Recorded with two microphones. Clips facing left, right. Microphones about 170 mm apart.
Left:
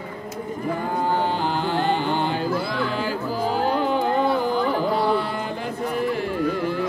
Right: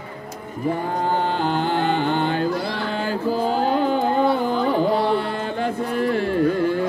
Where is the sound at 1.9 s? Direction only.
55° right (ahead or behind).